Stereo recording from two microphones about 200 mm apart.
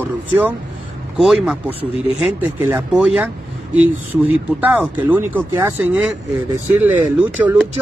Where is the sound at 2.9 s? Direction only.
5° right (ahead or behind).